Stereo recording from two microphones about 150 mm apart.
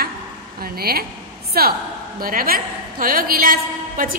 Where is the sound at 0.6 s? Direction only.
90° right.